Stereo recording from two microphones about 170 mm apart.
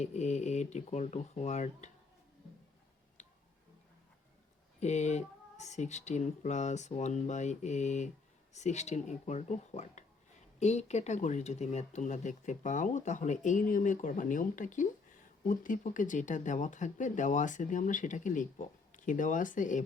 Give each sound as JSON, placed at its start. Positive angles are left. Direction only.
{"t": 0.0, "sound": "speech", "side_deg": 40}
{"t": 4.8, "sound": "speech", "side_deg": 40}